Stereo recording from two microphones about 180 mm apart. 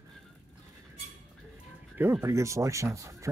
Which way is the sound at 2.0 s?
15° right (ahead or behind).